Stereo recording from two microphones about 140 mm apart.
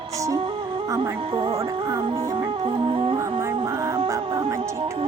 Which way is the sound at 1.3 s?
40° right (ahead or behind).